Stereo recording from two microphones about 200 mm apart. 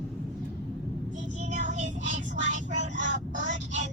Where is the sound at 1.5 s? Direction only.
40° right (ahead or behind).